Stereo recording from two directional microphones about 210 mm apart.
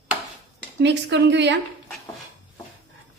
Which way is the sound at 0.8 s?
55° right (ahead or behind).